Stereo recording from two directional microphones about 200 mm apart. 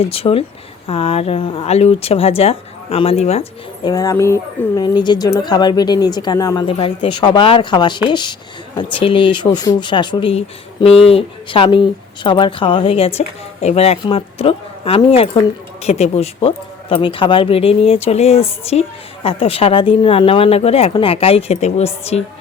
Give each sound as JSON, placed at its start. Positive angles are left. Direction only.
{"t": 0.0, "sound": "speech", "side_deg": 30}
{"t": 3.8, "sound": "speech", "side_deg": 15}